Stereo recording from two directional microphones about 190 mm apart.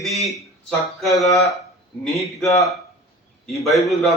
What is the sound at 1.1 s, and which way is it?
Speech, 15° left (ahead or behind).